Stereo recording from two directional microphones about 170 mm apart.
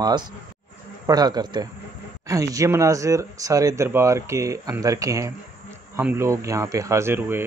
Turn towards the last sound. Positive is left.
turn(degrees=-15)  # may be behind; listen again after turning